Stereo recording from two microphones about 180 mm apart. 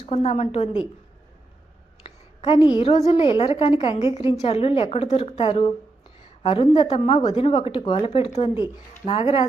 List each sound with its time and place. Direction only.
0.0 s a woman's voice: 35° left (ahead or behind)
2.0 s a sound: 30° left (ahead or behind)
3.1 s a woman's voice: 30° left (ahead or behind)